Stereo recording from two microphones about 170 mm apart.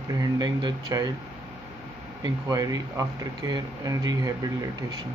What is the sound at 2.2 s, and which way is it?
Speech, 20° right (ahead or behind).